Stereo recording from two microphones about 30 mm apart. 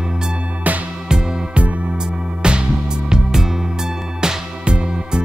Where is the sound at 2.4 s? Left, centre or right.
Right.